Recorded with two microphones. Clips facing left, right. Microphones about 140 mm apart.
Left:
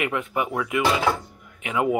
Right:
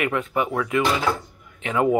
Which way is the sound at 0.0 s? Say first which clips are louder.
Right 2 dB; 15° left (ahead or behind).